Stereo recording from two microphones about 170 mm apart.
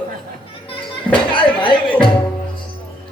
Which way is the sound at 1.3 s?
30° left (ahead or behind).